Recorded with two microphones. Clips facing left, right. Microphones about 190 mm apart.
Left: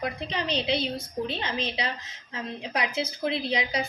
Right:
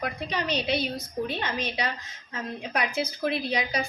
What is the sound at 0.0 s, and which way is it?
A woman's voice, 25° left (ahead or behind).